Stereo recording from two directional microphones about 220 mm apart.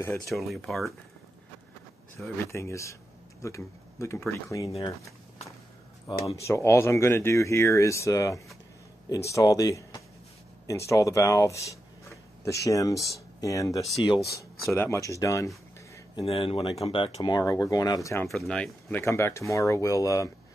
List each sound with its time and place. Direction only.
0.3 s speech: centre (ahead or behind)
2.2 s speech: 10° left (ahead or behind)
4.6 s speech: 25° left (ahead or behind)
6.0 s speech: 15° left (ahead or behind)
12.6 s speech: 15° left (ahead or behind)
16.2 s speech: 25° left (ahead or behind)
18.3 s speech: 5° left (ahead or behind)